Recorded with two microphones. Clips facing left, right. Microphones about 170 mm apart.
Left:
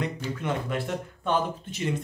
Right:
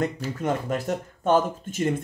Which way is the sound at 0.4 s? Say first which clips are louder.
Right 4 dB; 40° right (ahead or behind).